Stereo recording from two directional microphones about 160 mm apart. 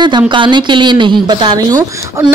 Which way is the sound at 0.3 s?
30° right (ahead or behind).